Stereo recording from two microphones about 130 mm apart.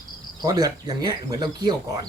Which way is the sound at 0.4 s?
30° right (ahead or behind).